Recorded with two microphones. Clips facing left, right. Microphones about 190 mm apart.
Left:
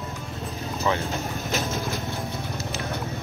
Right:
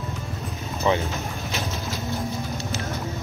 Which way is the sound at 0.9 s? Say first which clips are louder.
Right 3 dB; 20° right (ahead or behind).